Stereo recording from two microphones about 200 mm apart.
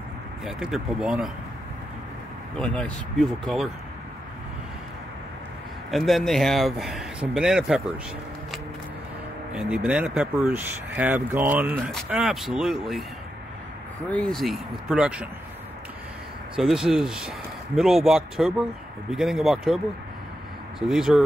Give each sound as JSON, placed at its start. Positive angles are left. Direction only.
{"t": 0.5, "sound": "speech", "side_deg": -5}
{"t": 2.5, "sound": "speech", "side_deg": 5}
{"t": 5.9, "sound": "speech", "side_deg": 0}
{"t": 9.5, "sound": "speech", "side_deg": -5}
{"t": 14.1, "sound": "speech", "side_deg": 0}
{"t": 16.5, "sound": "speech", "side_deg": -5}
{"t": 20.8, "sound": "speech", "side_deg": -5}